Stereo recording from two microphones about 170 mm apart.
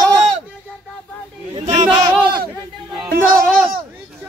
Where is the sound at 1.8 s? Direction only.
25° right (ahead or behind).